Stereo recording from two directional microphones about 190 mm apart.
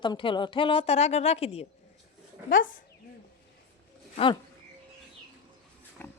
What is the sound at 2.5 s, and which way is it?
Speech, 45° left (ahead or behind).